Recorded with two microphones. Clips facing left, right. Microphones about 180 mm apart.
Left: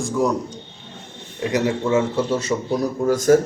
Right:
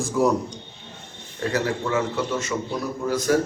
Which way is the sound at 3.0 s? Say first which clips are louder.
Left 6 dB; 45° left (ahead or behind).